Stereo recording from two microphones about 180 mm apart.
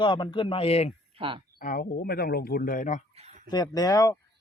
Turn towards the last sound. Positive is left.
turn(degrees=20)  # may be behind; listen again after turning